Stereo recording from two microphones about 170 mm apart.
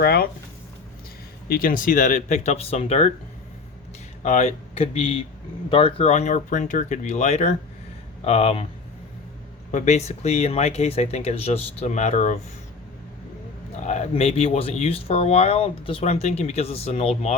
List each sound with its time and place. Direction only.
0.0 s speech: 65° left (ahead or behind)
1.5 s speech: 55° left (ahead or behind); by 3.1 s 35° left (ahead or behind)
4.2 s speech: 45° left (ahead or behind)
9.7 s speech: 40° left (ahead or behind)
13.7 s speech: 45° left (ahead or behind)